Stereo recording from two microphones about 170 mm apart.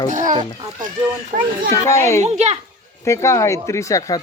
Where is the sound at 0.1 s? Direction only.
50° right (ahead or behind).